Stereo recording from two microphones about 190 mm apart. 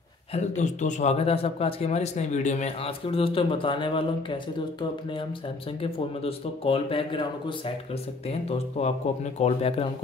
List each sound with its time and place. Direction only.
0.3 s a man's voice: 40° left (ahead or behind)
5.8 s a man's voice: 30° left (ahead or behind)